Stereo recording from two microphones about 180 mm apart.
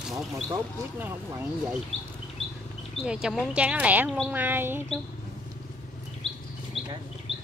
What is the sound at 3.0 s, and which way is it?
Speech, 5° right (ahead or behind).